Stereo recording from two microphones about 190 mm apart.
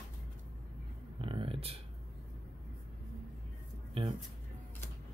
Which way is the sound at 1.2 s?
30° right (ahead or behind).